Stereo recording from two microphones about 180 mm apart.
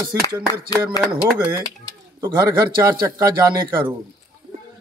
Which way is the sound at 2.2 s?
15° right (ahead or behind).